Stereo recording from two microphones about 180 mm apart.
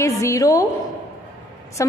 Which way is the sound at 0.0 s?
15° left (ahead or behind).